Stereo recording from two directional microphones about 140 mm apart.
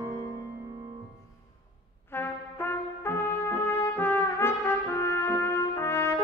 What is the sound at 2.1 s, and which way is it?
Brass instrument, 15° left (ahead or behind).